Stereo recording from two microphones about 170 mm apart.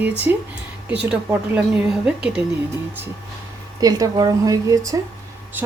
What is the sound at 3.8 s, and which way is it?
A woman's voice, 20° right (ahead or behind).